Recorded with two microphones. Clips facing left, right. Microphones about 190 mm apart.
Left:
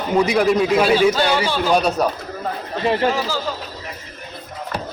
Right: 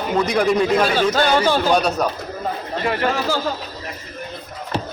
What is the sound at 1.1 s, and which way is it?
Speech, 45° right (ahead or behind).